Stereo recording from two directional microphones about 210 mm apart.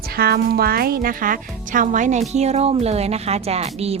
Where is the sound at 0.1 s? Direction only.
45° right (ahead or behind).